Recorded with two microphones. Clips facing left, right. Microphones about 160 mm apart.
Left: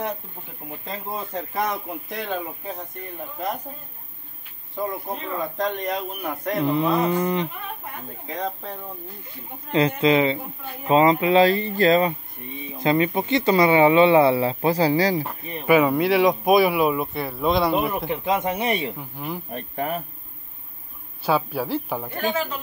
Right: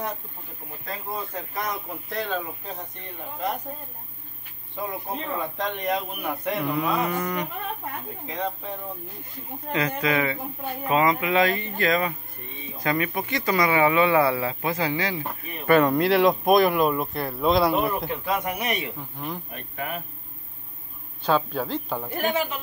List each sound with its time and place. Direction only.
0.8 s speech: 30° left (ahead or behind)
2.0 s speech: 20° left (ahead or behind)
5.8 s speech: centre (ahead or behind)
6.6 s speech: 30° left (ahead or behind)
8.3 s speech: centre (ahead or behind)
9.7 s speech: 30° left (ahead or behind)
15.6 s speech: 5° left (ahead or behind)
18.1 s speech: 20° left (ahead or behind)
18.9 s speech: 5° left (ahead or behind)
19.5 s speech: 35° left (ahead or behind)
21.3 s speech: 10° left (ahead or behind)